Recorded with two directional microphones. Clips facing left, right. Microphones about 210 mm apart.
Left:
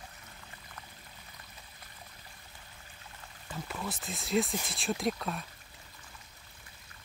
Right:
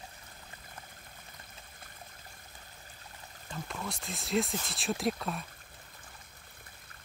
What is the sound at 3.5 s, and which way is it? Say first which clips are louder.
Speech: left 1 dB; 5° left (ahead or behind).